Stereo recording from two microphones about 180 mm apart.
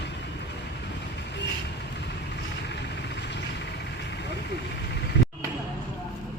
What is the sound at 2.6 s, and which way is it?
Vehicle, 70° left (ahead or behind).